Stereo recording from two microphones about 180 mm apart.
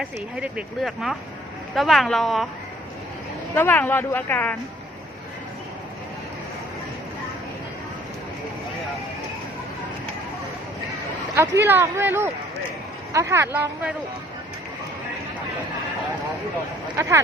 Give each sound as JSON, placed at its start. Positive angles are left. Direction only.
{"t": 0.0, "sound": "speech", "side_deg": -5}
{"t": 3.5, "sound": "speech", "side_deg": 10}
{"t": 11.3, "sound": "speech", "side_deg": -15}
{"t": 17.0, "sound": "speech", "side_deg": -15}